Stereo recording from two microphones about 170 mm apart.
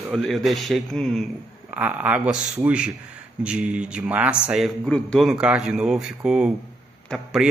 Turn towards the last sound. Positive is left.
turn(degrees=5)  # may be behind; listen again after turning